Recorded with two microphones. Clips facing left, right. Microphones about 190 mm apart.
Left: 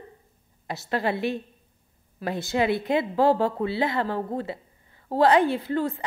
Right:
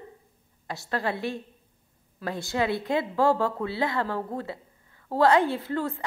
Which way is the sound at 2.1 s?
20° left (ahead or behind).